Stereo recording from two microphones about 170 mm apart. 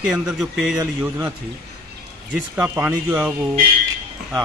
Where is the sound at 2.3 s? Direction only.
10° right (ahead or behind).